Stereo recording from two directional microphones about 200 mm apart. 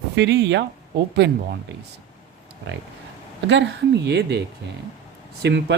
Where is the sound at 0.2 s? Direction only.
60° right (ahead or behind).